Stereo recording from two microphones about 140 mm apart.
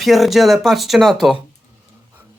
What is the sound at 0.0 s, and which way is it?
Speech, centre (ahead or behind).